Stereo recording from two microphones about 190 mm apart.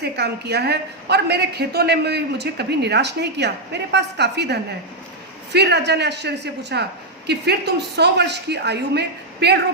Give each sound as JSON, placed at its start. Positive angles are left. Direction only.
{"t": 0.0, "sound": "a woman's voice", "side_deg": -60}